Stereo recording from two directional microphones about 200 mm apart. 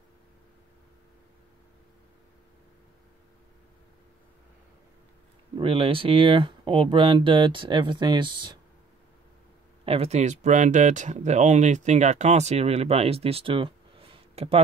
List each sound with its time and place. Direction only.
5.6 s speech: 25° right (ahead or behind)
9.8 s speech: 30° right (ahead or behind)